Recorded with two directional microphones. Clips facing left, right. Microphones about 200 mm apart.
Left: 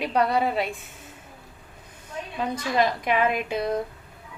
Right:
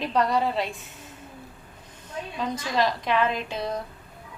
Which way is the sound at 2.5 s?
55° left (ahead or behind).